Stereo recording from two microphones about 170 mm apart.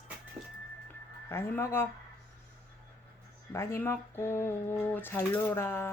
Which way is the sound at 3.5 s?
15° left (ahead or behind).